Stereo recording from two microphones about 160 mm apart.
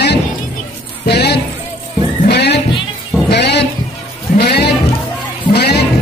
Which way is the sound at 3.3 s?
90° left.